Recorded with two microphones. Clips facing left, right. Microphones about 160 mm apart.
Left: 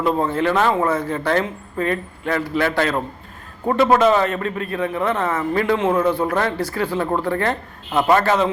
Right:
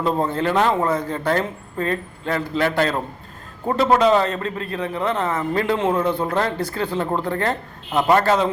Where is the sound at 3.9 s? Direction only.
25° right (ahead or behind).